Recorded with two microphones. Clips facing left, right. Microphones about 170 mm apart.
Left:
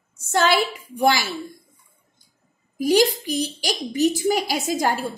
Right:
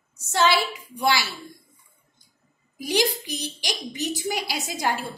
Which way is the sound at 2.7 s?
45° left (ahead or behind).